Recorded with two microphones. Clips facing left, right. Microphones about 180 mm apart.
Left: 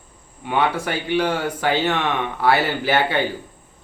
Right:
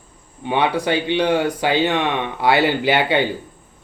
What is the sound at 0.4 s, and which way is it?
Speech, 20° right (ahead or behind).